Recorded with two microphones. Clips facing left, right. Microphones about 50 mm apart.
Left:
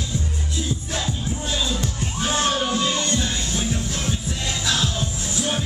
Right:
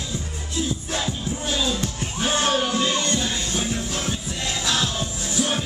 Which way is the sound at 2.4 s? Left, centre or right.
Right.